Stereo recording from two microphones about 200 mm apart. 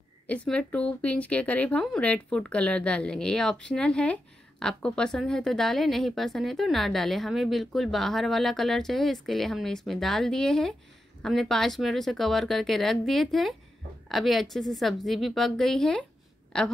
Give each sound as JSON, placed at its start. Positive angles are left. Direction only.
{"t": 0.3, "sound": "speech", "side_deg": 5}